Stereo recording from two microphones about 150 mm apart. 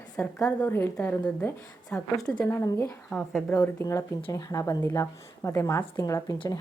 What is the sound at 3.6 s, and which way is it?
A woman's voice, 20° left (ahead or behind).